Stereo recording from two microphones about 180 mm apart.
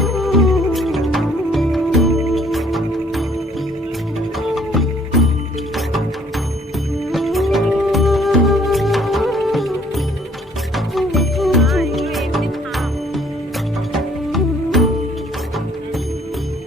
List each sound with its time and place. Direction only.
0.0 s music: centre (ahead or behind)
4.4 s music: centre (ahead or behind)
7.1 s music: centre (ahead or behind)